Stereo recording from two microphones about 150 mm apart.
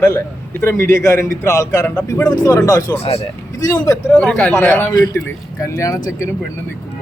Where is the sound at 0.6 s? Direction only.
15° left (ahead or behind).